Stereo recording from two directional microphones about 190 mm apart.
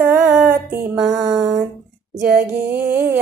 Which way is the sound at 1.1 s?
20° right (ahead or behind).